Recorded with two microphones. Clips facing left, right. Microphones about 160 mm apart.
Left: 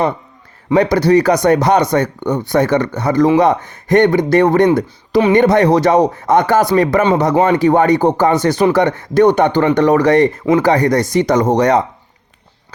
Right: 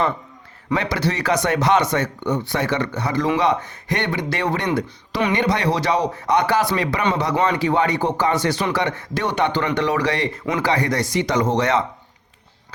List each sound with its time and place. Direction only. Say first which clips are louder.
0.7 s speech: left 11 dB; 40° left (ahead or behind)